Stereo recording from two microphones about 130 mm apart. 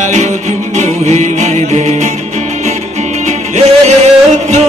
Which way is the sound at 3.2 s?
60° right (ahead or behind).